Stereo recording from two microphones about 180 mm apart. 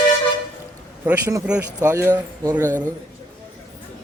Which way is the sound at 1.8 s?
15° right (ahead or behind).